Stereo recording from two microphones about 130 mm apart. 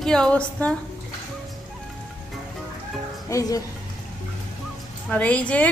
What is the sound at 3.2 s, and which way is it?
Speech, 25° left (ahead or behind).